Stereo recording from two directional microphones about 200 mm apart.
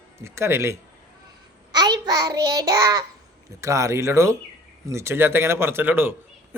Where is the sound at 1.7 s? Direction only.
20° right (ahead or behind).